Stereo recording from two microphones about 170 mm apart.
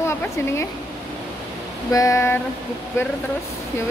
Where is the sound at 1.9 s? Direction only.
20° left (ahead or behind).